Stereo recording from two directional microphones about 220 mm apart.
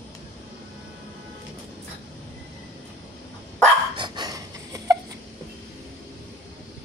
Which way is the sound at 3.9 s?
20° right (ahead or behind).